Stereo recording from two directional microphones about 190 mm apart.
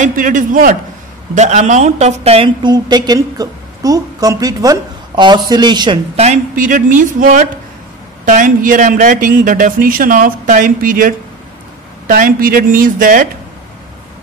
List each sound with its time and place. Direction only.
0.0 s a woman's voice: 45° right (ahead or behind)